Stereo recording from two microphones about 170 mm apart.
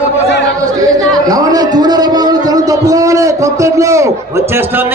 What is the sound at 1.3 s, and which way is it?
A man's voice, 20° right (ahead or behind).